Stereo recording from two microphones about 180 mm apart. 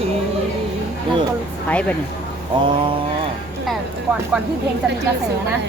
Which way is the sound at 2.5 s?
25° right (ahead or behind).